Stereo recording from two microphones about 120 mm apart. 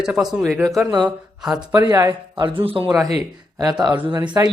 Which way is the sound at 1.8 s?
30° right (ahead or behind).